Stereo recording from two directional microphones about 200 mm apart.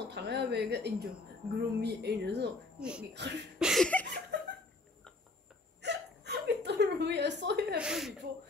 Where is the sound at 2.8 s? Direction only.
5° right (ahead or behind).